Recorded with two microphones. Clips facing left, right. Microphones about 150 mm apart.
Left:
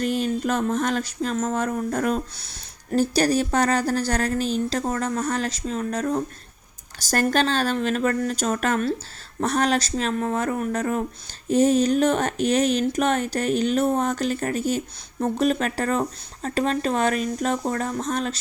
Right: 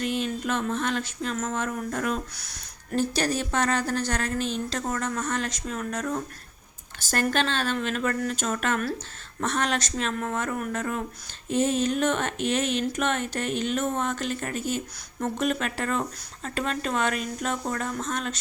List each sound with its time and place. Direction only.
0.0 s speech: 40° left (ahead or behind)